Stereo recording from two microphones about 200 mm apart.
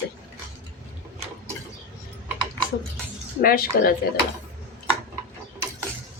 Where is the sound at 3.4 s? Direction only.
45° left (ahead or behind).